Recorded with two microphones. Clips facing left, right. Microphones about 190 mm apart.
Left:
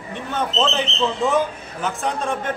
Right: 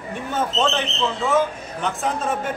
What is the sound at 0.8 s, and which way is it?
Speech, 15° left (ahead or behind).